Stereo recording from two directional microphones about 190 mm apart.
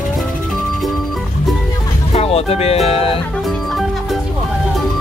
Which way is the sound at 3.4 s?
Centre (ahead or behind).